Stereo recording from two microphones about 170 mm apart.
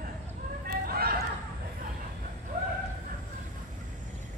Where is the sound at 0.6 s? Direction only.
65° right (ahead or behind).